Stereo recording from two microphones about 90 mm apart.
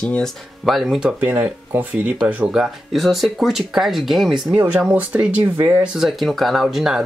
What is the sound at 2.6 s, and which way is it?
Speech, centre (ahead or behind).